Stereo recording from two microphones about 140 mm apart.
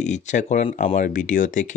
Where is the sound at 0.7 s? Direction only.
75° left (ahead or behind).